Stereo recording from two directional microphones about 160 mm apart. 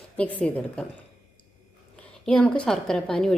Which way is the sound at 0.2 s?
10° left (ahead or behind).